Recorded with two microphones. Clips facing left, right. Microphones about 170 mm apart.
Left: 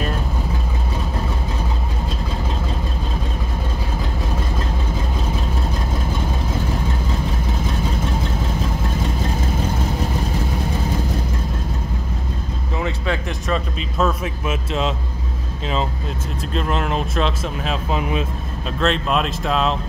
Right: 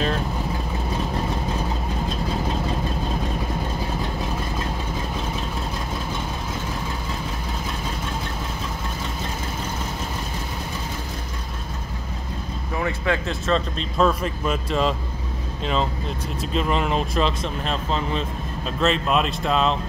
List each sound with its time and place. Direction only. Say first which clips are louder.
12.8 s a sound: even; 20° left (ahead or behind)
13.9 s speech: right 1 dB; 5° left (ahead or behind)
16.5 s speech: even; centre (ahead or behind)
17.9 s speech: left 4 dB; 10° left (ahead or behind)
18.8 s speech: left 1 dB; centre (ahead or behind)